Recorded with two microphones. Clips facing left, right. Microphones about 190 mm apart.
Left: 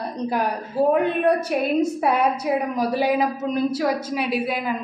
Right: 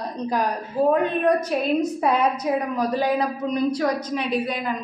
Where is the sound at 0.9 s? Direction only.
10° left (ahead or behind).